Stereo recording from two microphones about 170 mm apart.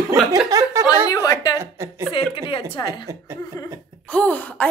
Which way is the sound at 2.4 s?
30° left (ahead or behind).